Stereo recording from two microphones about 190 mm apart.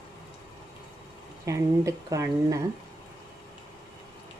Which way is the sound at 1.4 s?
15° right (ahead or behind).